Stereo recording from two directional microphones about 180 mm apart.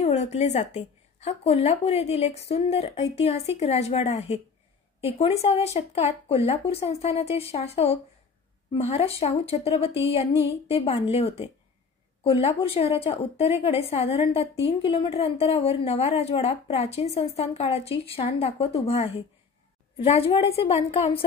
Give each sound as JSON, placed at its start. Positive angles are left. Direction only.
{"t": 0.0, "sound": "a woman's voice", "side_deg": 40}